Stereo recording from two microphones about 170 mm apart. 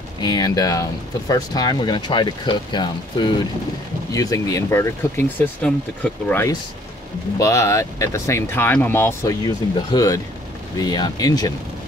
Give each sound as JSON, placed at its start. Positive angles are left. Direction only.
{"t": 0.2, "sound": "speech", "side_deg": 25}